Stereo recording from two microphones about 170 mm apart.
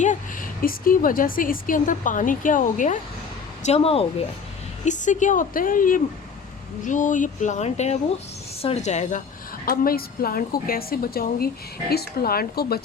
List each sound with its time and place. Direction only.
0.0 s a woman's voice: 50° left (ahead or behind)
3.6 s speech: 35° left (ahead or behind)
4.9 s a woman's voice: 45° left (ahead or behind)
9.6 s a woman's voice: 60° left (ahead or behind)